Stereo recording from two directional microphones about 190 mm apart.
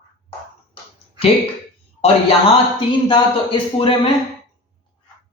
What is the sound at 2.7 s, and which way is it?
Speech, 25° left (ahead or behind).